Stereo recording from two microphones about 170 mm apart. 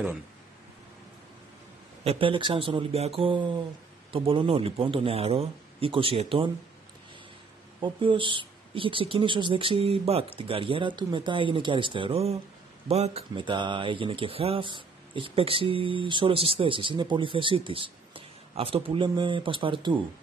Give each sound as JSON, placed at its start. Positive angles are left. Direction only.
{"t": 2.0, "sound": "speech", "side_deg": -30}
{"t": 7.8, "sound": "speech", "side_deg": -30}